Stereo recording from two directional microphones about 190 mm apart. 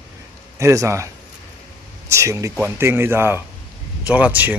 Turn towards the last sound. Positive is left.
turn(degrees=-10)  # may be behind; listen again after turning